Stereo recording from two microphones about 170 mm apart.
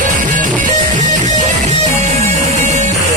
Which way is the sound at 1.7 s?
40° right (ahead or behind).